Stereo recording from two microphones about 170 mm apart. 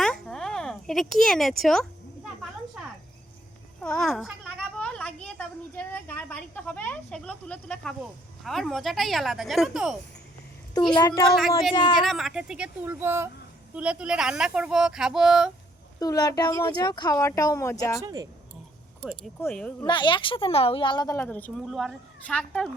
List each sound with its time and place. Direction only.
0.0 s a sound: 5° left (ahead or behind)
3.8 s a woman's voice: 5° left (ahead or behind)
10.9 s speech: 25° left (ahead or behind)
11.3 s speech: centre (ahead or behind)
11.7 s speech: 30° left (ahead or behind)
12.0 s speech: centre (ahead or behind)
16.0 s speech: 20° left (ahead or behind)
18.0 s speech: 20° right (ahead or behind)
19.4 s speech: 10° left (ahead or behind)
19.9 s speech: 30° left (ahead or behind)
21.2 s speech: 10° left (ahead or behind)